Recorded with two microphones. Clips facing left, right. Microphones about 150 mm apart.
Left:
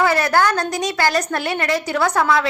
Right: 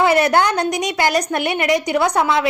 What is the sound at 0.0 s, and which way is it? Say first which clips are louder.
A woman's voice: right 2 dB; 20° right (ahead or behind).